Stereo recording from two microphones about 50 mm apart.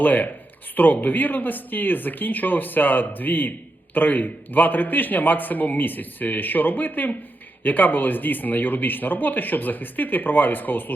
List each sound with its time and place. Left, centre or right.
0.0 s speech: left